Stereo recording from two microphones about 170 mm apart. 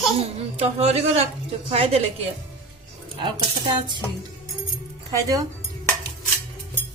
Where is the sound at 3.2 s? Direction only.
25° right (ahead or behind).